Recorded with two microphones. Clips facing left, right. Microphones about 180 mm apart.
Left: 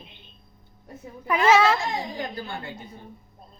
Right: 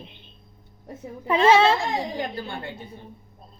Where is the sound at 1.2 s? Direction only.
30° right (ahead or behind).